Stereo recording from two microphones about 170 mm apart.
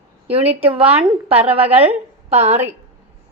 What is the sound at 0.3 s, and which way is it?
A woman's voice, 35° right (ahead or behind).